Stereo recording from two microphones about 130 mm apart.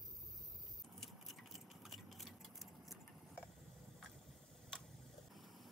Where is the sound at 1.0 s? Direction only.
Centre (ahead or behind).